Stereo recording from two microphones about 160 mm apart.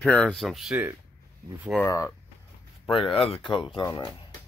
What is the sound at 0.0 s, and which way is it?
Speech, 5° left (ahead or behind).